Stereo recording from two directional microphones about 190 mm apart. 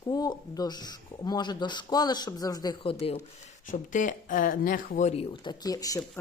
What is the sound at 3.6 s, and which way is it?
Speech, 45° left (ahead or behind).